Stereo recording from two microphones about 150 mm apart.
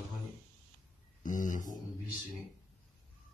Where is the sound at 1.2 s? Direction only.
60° left (ahead or behind).